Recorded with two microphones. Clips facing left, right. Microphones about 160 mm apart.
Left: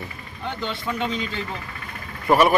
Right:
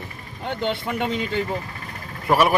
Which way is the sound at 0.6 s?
60° right (ahead or behind).